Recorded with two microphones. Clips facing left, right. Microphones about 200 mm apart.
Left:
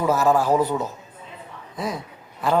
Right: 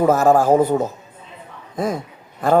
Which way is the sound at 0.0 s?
50° right (ahead or behind).